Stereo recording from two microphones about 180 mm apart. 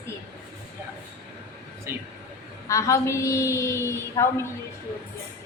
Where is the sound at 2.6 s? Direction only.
15° left (ahead or behind).